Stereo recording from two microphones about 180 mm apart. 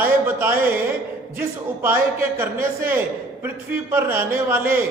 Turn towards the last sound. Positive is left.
turn(degrees=-10)  # may be behind; listen again after turning